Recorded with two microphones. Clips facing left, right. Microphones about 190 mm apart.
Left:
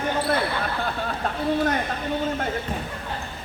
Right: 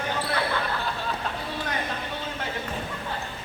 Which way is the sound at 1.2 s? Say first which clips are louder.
Left 9 dB; 45° left (ahead or behind).